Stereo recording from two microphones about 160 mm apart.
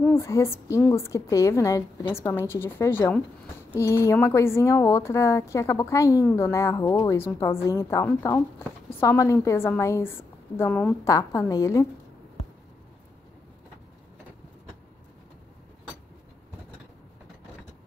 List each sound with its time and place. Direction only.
0.0 s speech: 15° left (ahead or behind)
11.1 s a woman's voice: 20° left (ahead or behind)